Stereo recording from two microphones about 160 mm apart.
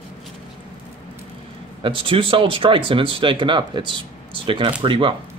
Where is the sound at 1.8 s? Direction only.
35° right (ahead or behind).